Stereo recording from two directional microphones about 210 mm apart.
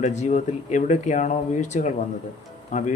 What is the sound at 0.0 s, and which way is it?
Speech, 35° left (ahead or behind).